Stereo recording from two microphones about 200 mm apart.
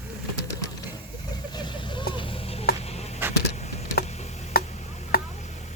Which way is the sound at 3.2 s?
10° right (ahead or behind).